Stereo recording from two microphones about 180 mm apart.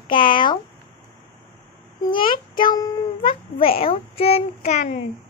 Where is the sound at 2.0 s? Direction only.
25° left (ahead or behind).